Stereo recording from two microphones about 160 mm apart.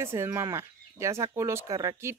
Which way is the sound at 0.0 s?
15° right (ahead or behind).